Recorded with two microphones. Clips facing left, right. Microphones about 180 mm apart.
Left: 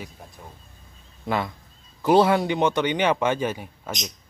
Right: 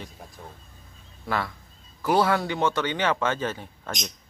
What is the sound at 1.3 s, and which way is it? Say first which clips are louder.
Speech: left 3 dB; 20° left (ahead or behind).